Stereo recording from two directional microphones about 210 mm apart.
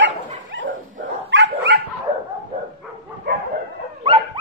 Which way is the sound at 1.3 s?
60° right (ahead or behind).